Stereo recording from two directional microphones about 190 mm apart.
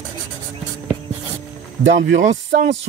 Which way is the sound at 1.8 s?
75° right (ahead or behind).